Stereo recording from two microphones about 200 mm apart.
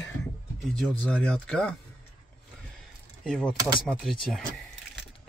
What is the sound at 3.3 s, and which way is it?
Speech, centre (ahead or behind).